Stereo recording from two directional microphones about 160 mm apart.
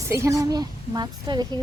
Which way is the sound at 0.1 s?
20° right (ahead or behind).